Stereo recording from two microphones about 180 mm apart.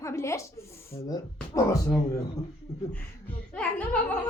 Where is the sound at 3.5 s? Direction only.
5° left (ahead or behind).